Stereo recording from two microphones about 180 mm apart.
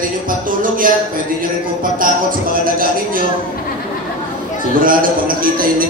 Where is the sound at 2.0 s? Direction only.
50° right (ahead or behind).